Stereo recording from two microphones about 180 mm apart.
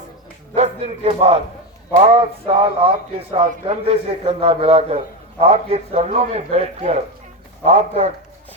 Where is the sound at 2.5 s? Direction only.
30° right (ahead or behind).